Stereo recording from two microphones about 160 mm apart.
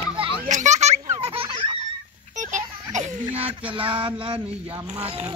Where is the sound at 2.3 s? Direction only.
50° right (ahead or behind).